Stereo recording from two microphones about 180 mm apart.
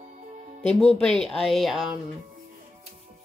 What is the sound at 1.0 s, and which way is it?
Speech, centre (ahead or behind).